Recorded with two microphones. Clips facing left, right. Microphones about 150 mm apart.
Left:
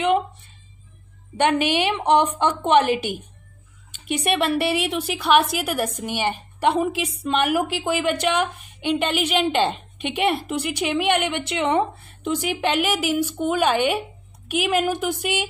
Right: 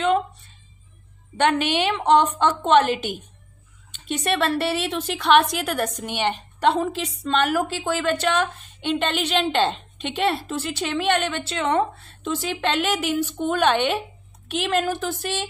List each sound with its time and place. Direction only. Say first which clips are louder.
1.3 s a woman's voice: left 1 dB; 10° left (ahead or behind)